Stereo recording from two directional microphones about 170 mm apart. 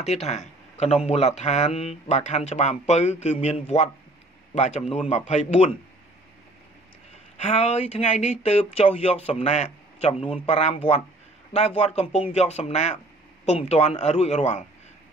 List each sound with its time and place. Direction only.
0.0 s speech: 40° left (ahead or behind)
7.3 s speech: 40° left (ahead or behind)